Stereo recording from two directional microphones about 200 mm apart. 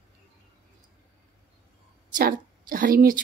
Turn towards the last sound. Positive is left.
turn(degrees=-45)  # may be behind; listen again after turning